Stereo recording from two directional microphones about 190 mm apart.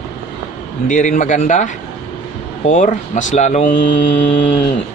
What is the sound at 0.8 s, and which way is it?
Speech, 45° left (ahead or behind).